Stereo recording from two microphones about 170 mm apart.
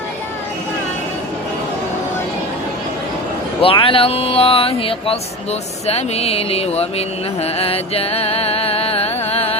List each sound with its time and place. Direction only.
3.6 s music: 30° left (ahead or behind)